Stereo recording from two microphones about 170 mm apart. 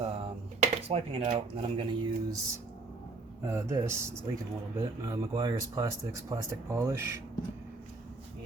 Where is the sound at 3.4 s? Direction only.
15° right (ahead or behind).